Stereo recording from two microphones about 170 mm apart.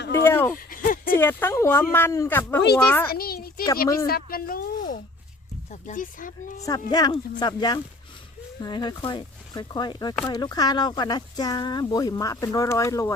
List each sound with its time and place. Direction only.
0.1 s a sound: 15° left (ahead or behind)
0.5 s a sound: 55° left (ahead or behind)
1.2 s speech: 10° left (ahead or behind)
3.1 s a child's voice: 60° left (ahead or behind)
5.8 s speech: 50° left (ahead or behind)
6.6 s speech: 20° left (ahead or behind)